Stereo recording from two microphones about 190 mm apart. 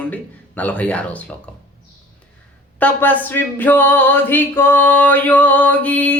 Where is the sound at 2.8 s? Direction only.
10° left (ahead or behind).